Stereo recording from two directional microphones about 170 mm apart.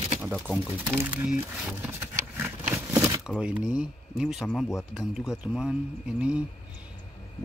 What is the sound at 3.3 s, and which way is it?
Speech, 5° right (ahead or behind).